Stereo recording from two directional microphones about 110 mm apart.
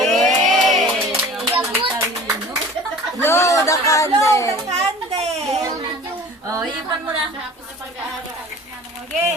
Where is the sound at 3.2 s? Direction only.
20° left (ahead or behind).